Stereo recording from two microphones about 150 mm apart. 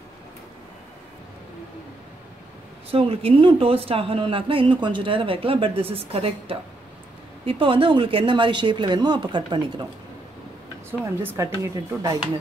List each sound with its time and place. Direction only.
2.9 s a woman's voice: 40° right (ahead or behind)
10.9 s speech: 15° right (ahead or behind)